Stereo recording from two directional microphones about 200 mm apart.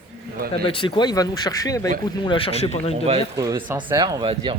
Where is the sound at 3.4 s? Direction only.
15° right (ahead or behind).